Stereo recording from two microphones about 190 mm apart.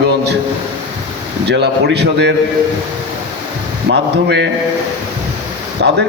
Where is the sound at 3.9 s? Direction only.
65° right (ahead or behind).